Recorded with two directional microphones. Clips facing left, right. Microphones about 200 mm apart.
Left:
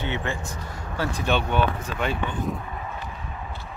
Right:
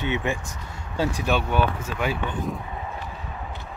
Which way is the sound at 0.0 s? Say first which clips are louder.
Right 3 dB; 15° right (ahead or behind).